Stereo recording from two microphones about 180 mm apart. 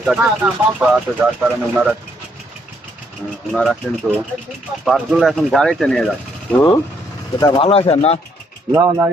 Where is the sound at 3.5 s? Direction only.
Centre (ahead or behind).